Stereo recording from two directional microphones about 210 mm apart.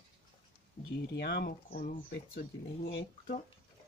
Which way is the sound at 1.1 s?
50° left (ahead or behind).